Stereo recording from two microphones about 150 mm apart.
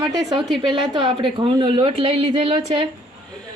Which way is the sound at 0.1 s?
25° right (ahead or behind).